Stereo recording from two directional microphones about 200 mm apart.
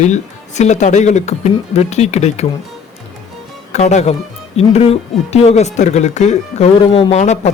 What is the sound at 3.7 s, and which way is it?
Speech, 35° left (ahead or behind).